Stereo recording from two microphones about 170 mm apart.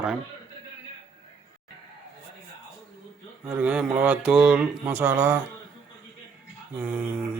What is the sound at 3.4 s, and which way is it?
Speech, 5° right (ahead or behind).